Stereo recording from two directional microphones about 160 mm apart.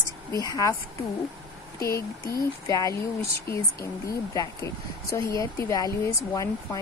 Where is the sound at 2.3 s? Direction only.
20° left (ahead or behind).